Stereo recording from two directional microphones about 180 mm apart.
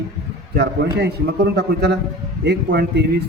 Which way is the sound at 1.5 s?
65° right (ahead or behind).